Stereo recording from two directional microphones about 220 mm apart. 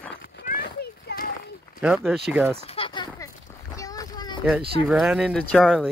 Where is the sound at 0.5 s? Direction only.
40° left (ahead or behind).